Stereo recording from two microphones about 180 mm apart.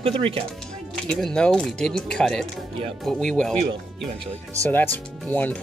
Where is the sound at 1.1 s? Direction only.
5° left (ahead or behind).